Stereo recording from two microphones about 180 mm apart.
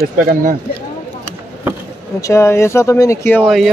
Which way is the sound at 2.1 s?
15° left (ahead or behind).